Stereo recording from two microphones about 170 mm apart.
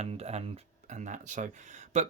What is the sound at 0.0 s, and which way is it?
Speech, 40° right (ahead or behind).